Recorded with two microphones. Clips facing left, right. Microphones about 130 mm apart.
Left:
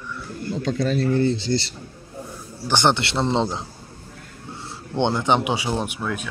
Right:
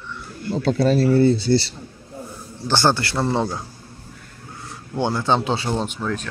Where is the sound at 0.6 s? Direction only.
35° right (ahead or behind).